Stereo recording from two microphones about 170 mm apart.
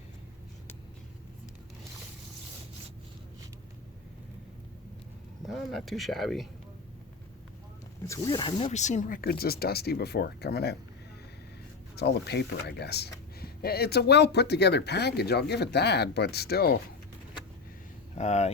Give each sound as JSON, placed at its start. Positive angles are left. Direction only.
{"t": 5.5, "sound": "speech", "side_deg": 0}
{"t": 8.0, "sound": "speech", "side_deg": 20}
{"t": 8.5, "sound": "speech", "side_deg": 40}
{"t": 11.9, "sound": "speech", "side_deg": 75}
{"t": 18.1, "sound": "speech", "side_deg": 40}